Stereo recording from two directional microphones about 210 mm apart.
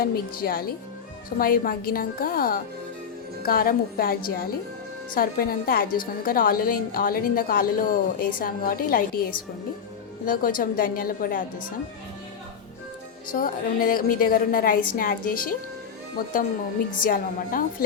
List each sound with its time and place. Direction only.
0.0 s a woman's voice: 45° left (ahead or behind)
13.3 s a woman's voice: 40° left (ahead or behind)